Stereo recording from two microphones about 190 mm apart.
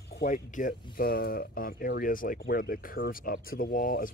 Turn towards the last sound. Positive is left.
turn(degrees=45)  # may be behind; listen again after turning